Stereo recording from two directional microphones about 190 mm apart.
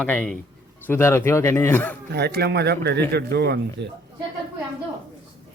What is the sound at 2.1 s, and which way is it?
Speech, 60° right (ahead or behind).